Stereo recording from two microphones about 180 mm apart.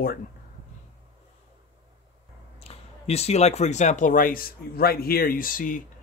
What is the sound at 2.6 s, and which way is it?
Speech, 35° left (ahead or behind).